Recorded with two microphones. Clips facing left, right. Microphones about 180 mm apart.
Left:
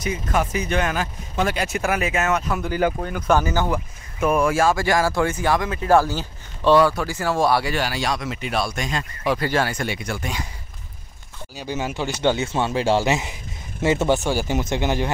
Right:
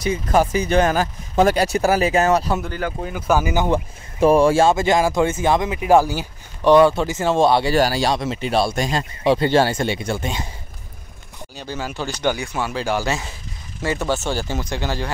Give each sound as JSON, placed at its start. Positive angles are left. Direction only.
{"t": 0.0, "sound": "speech", "side_deg": -35}
{"t": 3.0, "sound": "speech", "side_deg": -5}
{"t": 3.7, "sound": "speech", "side_deg": -30}
{"t": 7.7, "sound": "speech", "side_deg": -35}
{"t": 11.5, "sound": "speech", "side_deg": 15}